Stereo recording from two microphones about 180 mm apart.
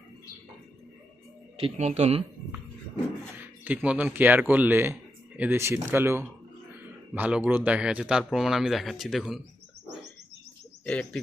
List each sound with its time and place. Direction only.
1.6 s speech: 40° right (ahead or behind)
3.6 s speech: 10° right (ahead or behind)
10.8 s bird: 5° left (ahead or behind)